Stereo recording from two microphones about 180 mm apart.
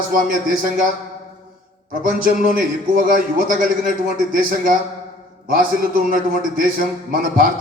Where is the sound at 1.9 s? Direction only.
50° right (ahead or behind).